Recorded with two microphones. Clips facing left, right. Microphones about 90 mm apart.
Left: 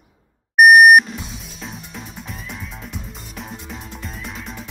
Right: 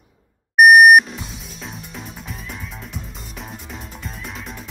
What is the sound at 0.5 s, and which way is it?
Music, centre (ahead or behind).